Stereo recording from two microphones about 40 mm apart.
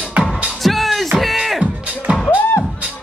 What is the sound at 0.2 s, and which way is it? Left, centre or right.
Music, right.